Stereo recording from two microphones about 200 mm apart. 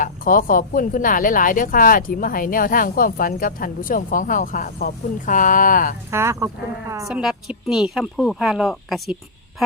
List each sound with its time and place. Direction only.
0.0 s speech: 45° left (ahead or behind)
6.1 s speech: 15° right (ahead or behind)